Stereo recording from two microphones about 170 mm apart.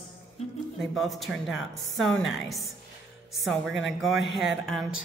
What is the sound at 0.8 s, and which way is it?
A woman's voice, centre (ahead or behind).